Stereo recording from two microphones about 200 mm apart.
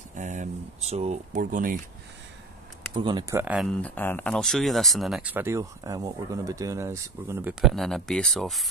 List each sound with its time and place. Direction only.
0.1 s speech: 40° right (ahead or behind)
2.9 s speech: 20° right (ahead or behind); by 3.7 s 5° right (ahead or behind)
3.8 s speech: 10° left (ahead or behind); by 7.5 s 15° right (ahead or behind)
7.6 s speech: centre (ahead or behind)